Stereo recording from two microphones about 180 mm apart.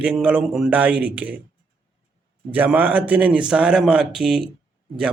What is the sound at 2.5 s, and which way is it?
Speech, 10° right (ahead or behind).